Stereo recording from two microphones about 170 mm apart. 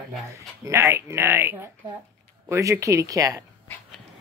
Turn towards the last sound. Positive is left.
turn(degrees=-20)  # may be behind; listen again after turning